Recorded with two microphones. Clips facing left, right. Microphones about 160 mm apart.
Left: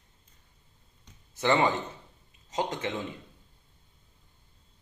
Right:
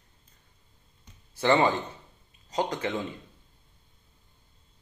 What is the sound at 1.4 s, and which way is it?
Speech, 35° right (ahead or behind).